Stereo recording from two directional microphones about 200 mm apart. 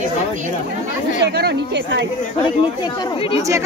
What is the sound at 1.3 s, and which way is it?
Speech, 55° right (ahead or behind).